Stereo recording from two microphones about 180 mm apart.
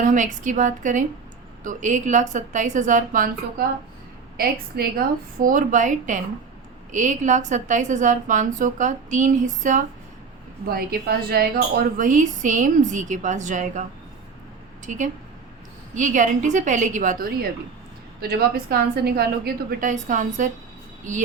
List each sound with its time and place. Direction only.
0.1 s a woman's voice: 45° right (ahead or behind)
10.7 s a woman's voice: 55° right (ahead or behind)
14.8 s a woman's voice: 45° right (ahead or behind); by 19.9 s 60° right (ahead or behind)
19.9 s a woman's voice: 45° right (ahead or behind)